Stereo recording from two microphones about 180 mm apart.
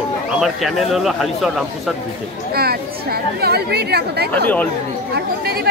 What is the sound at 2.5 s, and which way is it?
A woman's voice, 60° right (ahead or behind).